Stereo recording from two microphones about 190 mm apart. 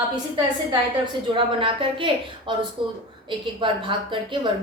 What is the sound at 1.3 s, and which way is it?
A woman's voice, 25° right (ahead or behind).